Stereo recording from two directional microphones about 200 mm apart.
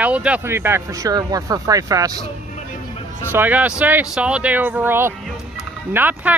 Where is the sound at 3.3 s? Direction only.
10° right (ahead or behind).